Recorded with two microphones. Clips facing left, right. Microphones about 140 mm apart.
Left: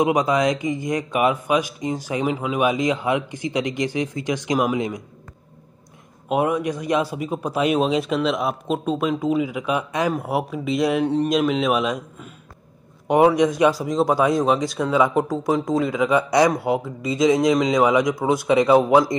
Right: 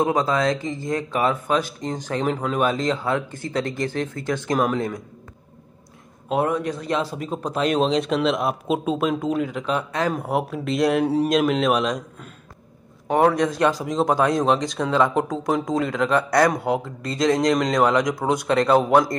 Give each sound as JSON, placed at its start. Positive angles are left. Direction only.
{"t": 0.0, "sound": "speech", "side_deg": 15}
{"t": 4.6, "sound": "speech", "side_deg": 5}
{"t": 6.2, "sound": "speech", "side_deg": 10}
{"t": 13.4, "sound": "speech", "side_deg": 10}